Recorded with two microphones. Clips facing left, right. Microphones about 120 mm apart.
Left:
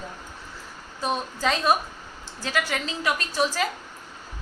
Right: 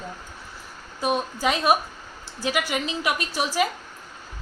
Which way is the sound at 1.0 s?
15° right (ahead or behind).